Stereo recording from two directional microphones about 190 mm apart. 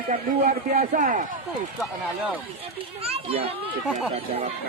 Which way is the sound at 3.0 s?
30° right (ahead or behind).